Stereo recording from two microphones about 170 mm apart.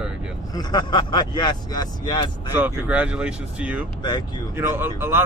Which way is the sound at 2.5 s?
10° right (ahead or behind).